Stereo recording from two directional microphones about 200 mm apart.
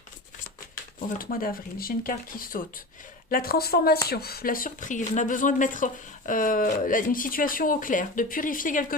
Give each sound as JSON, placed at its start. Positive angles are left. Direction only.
{"t": 1.2, "sound": "speech", "side_deg": 45}